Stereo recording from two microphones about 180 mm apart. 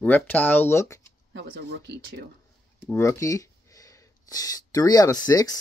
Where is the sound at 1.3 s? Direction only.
70° right (ahead or behind).